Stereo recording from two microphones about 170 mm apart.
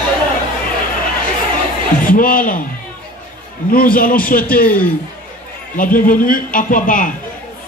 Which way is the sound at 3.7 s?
55° left (ahead or behind).